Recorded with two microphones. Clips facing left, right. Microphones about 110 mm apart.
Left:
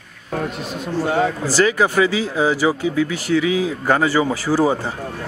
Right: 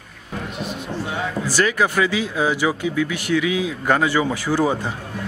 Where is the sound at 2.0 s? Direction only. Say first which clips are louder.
Left 5 dB; 5° left (ahead or behind).